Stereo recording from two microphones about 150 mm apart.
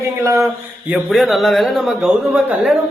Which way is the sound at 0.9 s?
Centre (ahead or behind).